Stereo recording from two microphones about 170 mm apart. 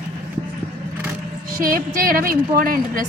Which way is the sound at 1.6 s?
55° right (ahead or behind).